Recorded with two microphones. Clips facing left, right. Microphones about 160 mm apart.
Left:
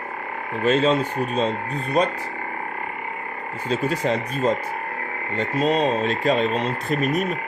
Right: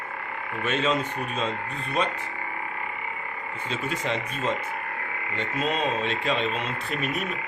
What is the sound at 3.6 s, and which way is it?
Speech, 40° left (ahead or behind).